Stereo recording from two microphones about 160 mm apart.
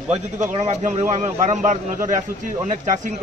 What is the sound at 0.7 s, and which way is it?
A man's voice, 45° right (ahead or behind).